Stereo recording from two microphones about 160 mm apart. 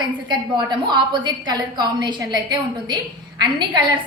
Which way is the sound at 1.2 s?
25° right (ahead or behind).